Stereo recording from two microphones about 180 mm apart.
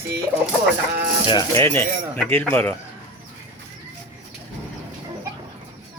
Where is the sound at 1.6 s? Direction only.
15° left (ahead or behind).